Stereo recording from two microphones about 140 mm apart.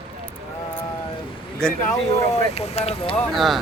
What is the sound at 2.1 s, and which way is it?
Speech, 50° left (ahead or behind).